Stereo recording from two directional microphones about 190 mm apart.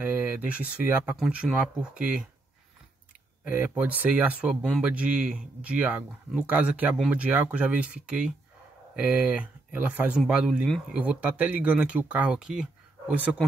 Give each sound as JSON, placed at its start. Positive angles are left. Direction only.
{"t": 0.0, "sound": "speech", "side_deg": -10}
{"t": 3.4, "sound": "speech", "side_deg": -10}